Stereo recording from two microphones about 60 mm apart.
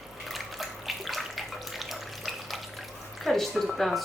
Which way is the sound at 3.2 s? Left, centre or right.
Centre.